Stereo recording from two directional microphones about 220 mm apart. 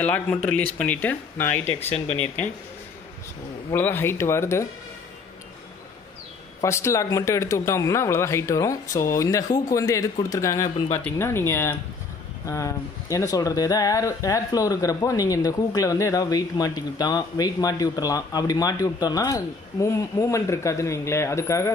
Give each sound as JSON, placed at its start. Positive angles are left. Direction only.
{"t": 0.0, "sound": "speech", "side_deg": 5}
{"t": 1.8, "sound": "speech", "side_deg": 30}
{"t": 2.1, "sound": "speech", "side_deg": 5}
{"t": 3.7, "sound": "speech", "side_deg": 10}
{"t": 6.6, "sound": "speech", "side_deg": 15}